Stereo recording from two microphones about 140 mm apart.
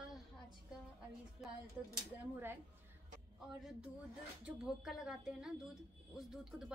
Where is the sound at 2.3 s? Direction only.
15° right (ahead or behind).